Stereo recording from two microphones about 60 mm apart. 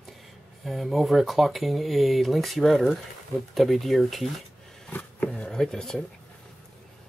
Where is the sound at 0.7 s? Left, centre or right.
Centre.